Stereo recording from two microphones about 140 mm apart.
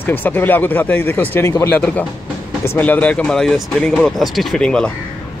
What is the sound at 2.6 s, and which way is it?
Speech, 15° left (ahead or behind).